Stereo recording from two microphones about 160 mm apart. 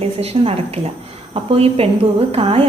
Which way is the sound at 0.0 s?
40° right (ahead or behind).